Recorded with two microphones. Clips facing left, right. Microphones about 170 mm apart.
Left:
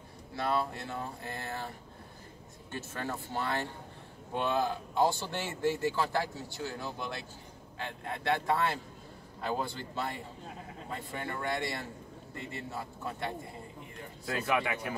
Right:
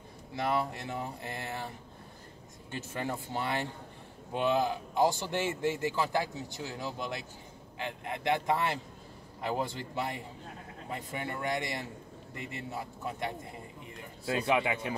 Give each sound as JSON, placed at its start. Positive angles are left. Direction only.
{"t": 0.4, "sound": "speech", "side_deg": -20}
{"t": 2.7, "sound": "speech", "side_deg": -15}